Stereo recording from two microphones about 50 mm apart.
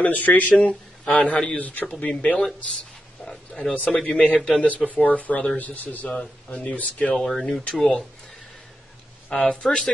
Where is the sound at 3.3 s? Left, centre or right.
Centre.